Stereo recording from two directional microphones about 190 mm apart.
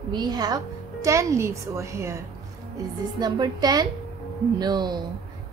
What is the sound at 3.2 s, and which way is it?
A woman's voice, 20° right (ahead or behind).